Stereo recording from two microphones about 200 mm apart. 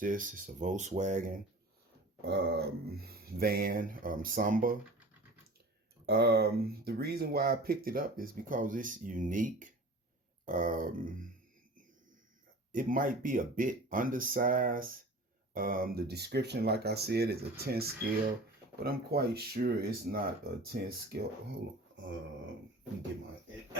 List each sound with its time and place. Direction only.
0.0 s speech: 40° right (ahead or behind)
2.2 s speech: 60° right (ahead or behind)
6.1 s speech: 50° right (ahead or behind)
12.7 s speech: 45° right (ahead or behind)